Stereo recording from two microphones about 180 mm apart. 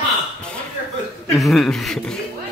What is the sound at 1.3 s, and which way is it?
Speech, centre (ahead or behind).